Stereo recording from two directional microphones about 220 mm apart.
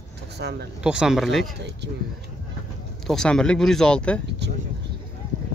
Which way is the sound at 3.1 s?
5° left (ahead or behind).